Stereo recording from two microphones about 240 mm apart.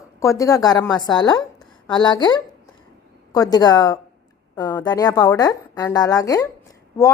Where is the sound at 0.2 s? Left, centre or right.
Centre.